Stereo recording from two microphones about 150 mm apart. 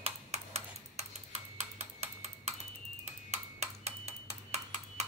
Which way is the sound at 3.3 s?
45° right (ahead or behind).